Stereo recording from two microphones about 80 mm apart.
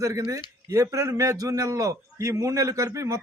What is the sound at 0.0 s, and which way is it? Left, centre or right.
A man's voice, right.